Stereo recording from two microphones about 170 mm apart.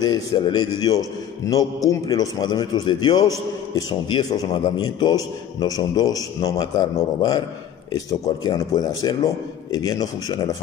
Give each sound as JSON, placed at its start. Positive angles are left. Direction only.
{"t": 0.0, "sound": "a man's voice", "side_deg": 25}